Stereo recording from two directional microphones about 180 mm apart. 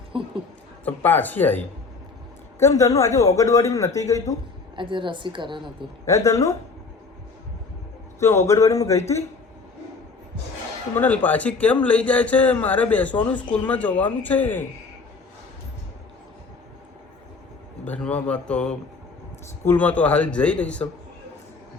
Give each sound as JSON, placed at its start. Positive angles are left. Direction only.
{"t": 0.1, "sound": "a woman's voice", "side_deg": -30}
{"t": 0.9, "sound": "a man's voice", "side_deg": 10}
{"t": 4.8, "sound": "a woman's voice", "side_deg": -25}
{"t": 6.1, "sound": "a man's voice", "side_deg": 15}
{"t": 8.2, "sound": "a man's voice", "side_deg": 15}
{"t": 10.9, "sound": "a man's voice", "side_deg": 10}
{"t": 17.8, "sound": "a man's voice", "side_deg": 5}